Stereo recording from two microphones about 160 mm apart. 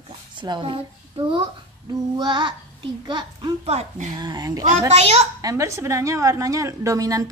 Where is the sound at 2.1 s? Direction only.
30° right (ahead or behind).